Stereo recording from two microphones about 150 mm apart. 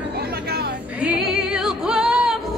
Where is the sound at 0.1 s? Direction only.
90° right.